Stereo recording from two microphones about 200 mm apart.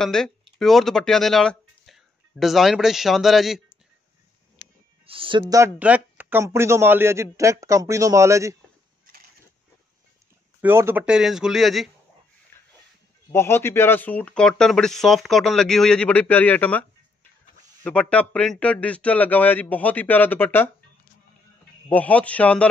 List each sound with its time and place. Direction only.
0.0 s speech: centre (ahead or behind)
4.6 s music: 65° left (ahead or behind)
5.0 s speech: 25° right (ahead or behind)
5.5 s a man's voice: 10° right (ahead or behind)
10.6 s speech: 10° right (ahead or behind)
13.3 s speech: 10° left (ahead or behind)
17.8 s speech: 5° left (ahead or behind)
21.8 s speech: 5° left (ahead or behind)